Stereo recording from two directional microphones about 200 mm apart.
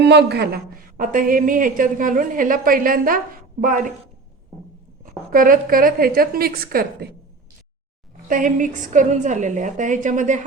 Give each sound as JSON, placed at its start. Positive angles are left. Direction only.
{"t": 0.0, "sound": "a woman's voice", "side_deg": -55}
{"t": 5.0, "sound": "a woman's voice", "side_deg": -45}
{"t": 8.3, "sound": "a woman's voice", "side_deg": -40}